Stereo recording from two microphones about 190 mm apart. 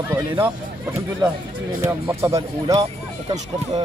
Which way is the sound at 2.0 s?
15° right (ahead or behind).